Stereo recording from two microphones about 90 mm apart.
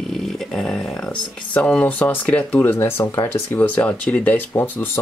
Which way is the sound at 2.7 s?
30° left (ahead or behind).